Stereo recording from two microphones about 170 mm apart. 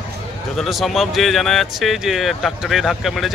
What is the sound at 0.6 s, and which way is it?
Speech, centre (ahead or behind).